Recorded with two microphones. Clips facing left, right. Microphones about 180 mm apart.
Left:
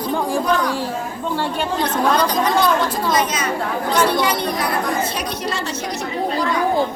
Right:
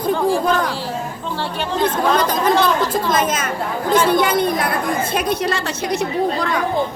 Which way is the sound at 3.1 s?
50° right (ahead or behind).